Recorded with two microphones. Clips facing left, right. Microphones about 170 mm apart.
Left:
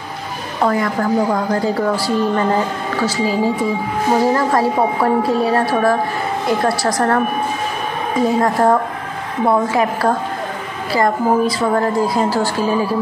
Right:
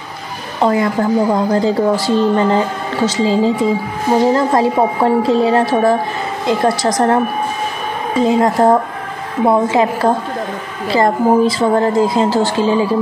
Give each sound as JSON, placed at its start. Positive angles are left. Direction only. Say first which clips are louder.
{"t": 0.6, "sound": "a woman's voice", "louder": "right 3 dB", "side_deg": -20}
{"t": 8.2, "sound": "a woman's voice", "louder": "right 3 dB", "side_deg": -20}